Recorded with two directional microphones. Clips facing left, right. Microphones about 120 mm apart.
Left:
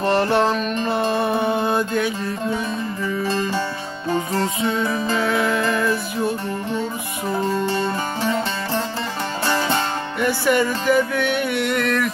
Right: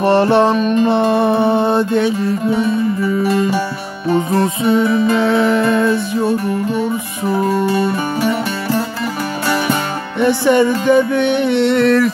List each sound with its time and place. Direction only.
0.0 s music: 25° right (ahead or behind)
4.6 s music: 25° right (ahead or behind)
10.2 s music: 25° right (ahead or behind)